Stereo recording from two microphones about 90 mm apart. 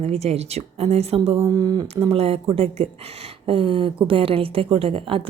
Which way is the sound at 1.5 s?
50° right (ahead or behind).